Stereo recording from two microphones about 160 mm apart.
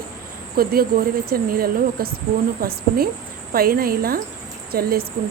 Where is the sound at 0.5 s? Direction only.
70° right (ahead or behind).